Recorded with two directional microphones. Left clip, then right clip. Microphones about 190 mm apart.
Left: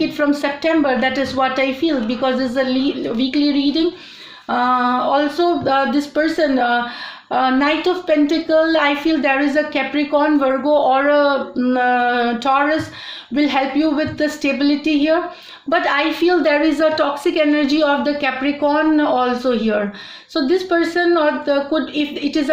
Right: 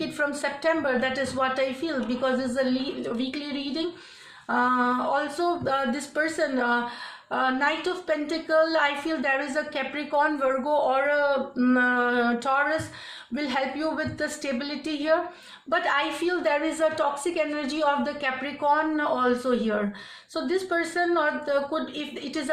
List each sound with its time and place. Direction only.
0.2 s a woman's voice: 35° left (ahead or behind)
4.4 s a woman's voice: 35° left (ahead or behind)